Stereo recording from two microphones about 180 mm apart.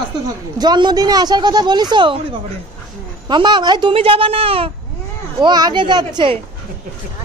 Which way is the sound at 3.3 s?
25° right (ahead or behind).